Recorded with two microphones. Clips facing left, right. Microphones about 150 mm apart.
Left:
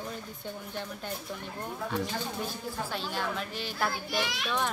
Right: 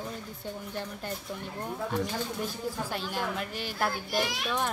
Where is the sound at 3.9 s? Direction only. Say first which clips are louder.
Right 2 dB; 45° right (ahead or behind).